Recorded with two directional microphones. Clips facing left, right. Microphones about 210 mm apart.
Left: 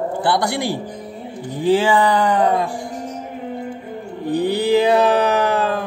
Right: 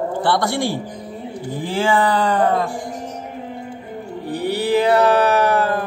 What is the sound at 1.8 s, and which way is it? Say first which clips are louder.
Music: left 1 dB; 15° left (ahead or behind).